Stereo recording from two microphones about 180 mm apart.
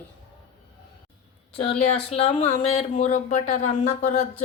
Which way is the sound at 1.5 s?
35° left (ahead or behind).